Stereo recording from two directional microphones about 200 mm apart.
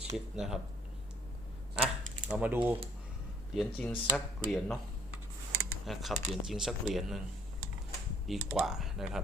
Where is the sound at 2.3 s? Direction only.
10° right (ahead or behind).